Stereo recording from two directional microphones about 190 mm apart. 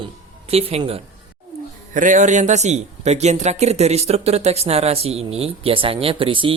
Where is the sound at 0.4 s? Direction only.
30° right (ahead or behind).